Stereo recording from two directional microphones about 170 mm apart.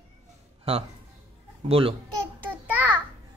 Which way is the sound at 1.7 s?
35° right (ahead or behind).